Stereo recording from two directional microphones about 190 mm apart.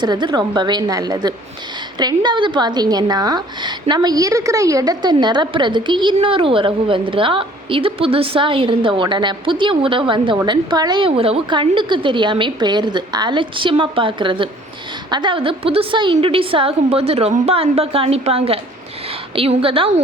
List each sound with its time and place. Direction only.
0.0 s a woman's voice: 25° right (ahead or behind)